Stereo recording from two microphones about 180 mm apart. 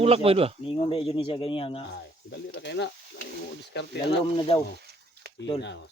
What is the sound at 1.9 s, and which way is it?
Speech, 75° left (ahead or behind).